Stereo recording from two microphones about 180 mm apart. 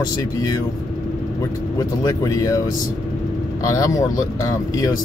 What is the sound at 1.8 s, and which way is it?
Speech, 20° left (ahead or behind).